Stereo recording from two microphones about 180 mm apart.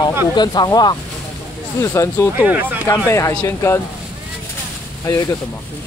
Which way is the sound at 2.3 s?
10° right (ahead or behind).